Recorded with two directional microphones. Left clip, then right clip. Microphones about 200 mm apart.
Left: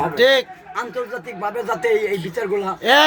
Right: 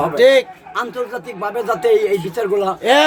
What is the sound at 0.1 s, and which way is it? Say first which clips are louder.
Speech: right 4 dB; 5° right (ahead or behind).